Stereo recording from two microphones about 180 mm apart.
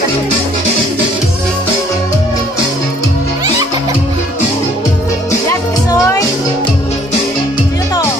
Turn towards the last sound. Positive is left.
turn(degrees=20)  # may be behind; listen again after turning